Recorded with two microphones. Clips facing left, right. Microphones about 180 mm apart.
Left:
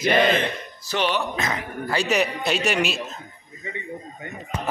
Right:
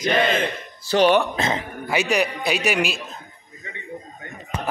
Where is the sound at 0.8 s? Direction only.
40° right (ahead or behind).